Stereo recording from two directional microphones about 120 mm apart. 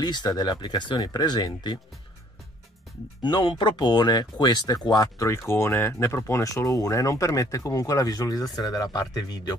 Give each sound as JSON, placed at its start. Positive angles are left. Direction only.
{"t": 0.0, "sound": "speech", "side_deg": 35}
{"t": 3.2, "sound": "speech", "side_deg": 40}